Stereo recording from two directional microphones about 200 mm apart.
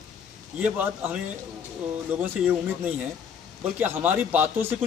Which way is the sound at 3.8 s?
10° right (ahead or behind).